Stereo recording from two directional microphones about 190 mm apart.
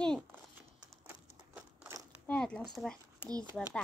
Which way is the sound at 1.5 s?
10° right (ahead or behind).